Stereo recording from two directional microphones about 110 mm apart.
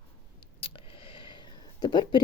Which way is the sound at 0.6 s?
55° left (ahead or behind).